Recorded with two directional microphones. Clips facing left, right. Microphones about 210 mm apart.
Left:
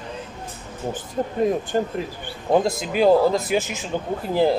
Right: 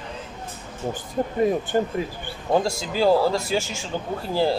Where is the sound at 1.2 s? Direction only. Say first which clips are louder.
Even; 5° right (ahead or behind).